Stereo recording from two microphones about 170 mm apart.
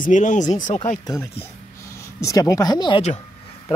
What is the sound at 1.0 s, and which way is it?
Speech, 15° left (ahead or behind).